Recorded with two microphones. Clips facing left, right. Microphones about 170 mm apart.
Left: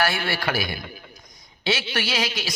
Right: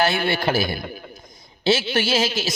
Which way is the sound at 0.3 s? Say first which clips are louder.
Right 5 dB; 25° right (ahead or behind).